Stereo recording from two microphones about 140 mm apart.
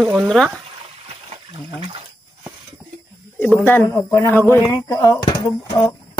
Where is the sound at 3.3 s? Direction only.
15° left (ahead or behind); by 5.1 s 30° left (ahead or behind).